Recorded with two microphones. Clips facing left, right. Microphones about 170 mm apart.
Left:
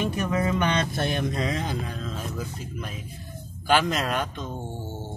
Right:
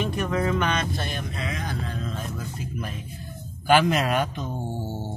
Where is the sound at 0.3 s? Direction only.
5° left (ahead or behind).